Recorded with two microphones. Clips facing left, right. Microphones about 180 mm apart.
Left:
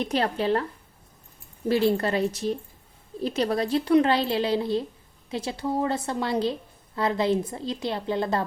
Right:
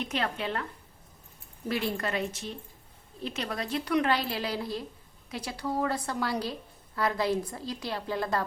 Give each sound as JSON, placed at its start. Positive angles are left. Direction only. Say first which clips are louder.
{"t": 0.0, "sound": "a woman's voice", "louder": "left 7 dB", "side_deg": 35}